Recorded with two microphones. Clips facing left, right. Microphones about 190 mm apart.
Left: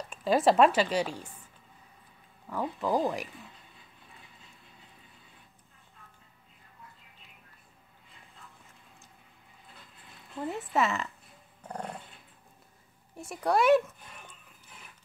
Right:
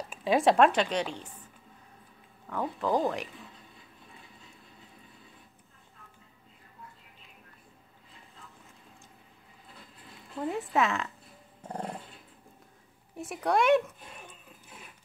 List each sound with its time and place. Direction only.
0.1 s a woman's voice: centre (ahead or behind)
2.5 s a woman's voice: 5° left (ahead or behind)
10.4 s a woman's voice: centre (ahead or behind)
11.6 s dog: 25° right (ahead or behind)
13.2 s a woman's voice: centre (ahead or behind)